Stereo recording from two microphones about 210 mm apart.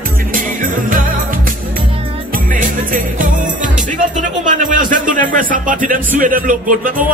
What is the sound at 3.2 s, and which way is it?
Speech, 40° right (ahead or behind).